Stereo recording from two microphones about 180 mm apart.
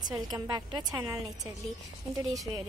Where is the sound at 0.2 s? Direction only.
20° right (ahead or behind).